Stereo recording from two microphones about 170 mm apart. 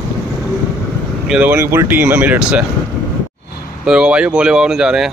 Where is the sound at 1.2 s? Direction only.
10° right (ahead or behind).